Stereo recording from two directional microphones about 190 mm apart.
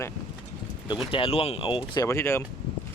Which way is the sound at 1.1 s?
30° left (ahead or behind).